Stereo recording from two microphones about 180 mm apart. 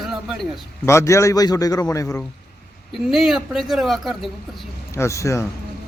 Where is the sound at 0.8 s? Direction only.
15° left (ahead or behind).